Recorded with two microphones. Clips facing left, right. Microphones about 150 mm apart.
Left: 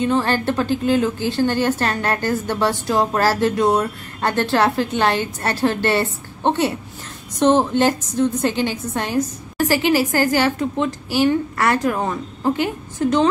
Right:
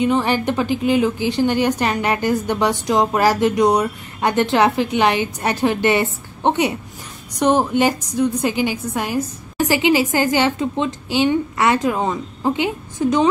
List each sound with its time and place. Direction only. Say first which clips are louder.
0.0 s a woman's voice: right 1 dB; 15° right (ahead or behind)